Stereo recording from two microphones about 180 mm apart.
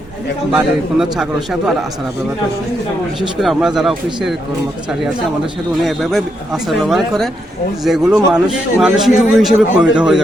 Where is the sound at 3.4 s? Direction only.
Centre (ahead or behind).